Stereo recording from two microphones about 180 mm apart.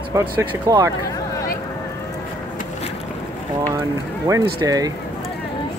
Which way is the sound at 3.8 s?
20° right (ahead or behind).